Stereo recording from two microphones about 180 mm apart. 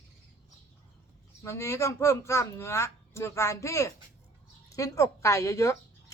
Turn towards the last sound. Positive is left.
turn(degrees=15)  # may be behind; listen again after turning